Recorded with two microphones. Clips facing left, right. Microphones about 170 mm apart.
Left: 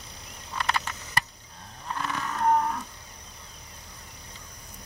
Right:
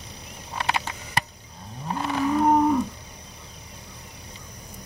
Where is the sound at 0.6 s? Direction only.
20° right (ahead or behind).